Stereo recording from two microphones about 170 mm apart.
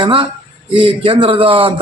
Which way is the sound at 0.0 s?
30° right (ahead or behind).